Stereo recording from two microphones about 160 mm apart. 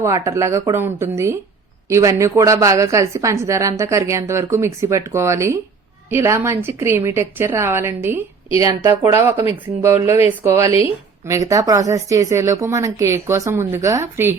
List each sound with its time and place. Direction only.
0.0 s a woman's voice: 20° right (ahead or behind)